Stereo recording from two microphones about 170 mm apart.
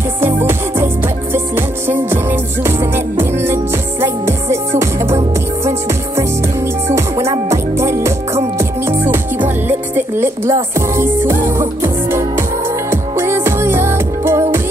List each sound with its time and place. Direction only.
1.3 s music: 15° right (ahead or behind)
7.4 s music: 15° right (ahead or behind)